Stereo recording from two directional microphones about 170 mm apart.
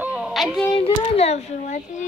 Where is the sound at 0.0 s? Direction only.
5° right (ahead or behind).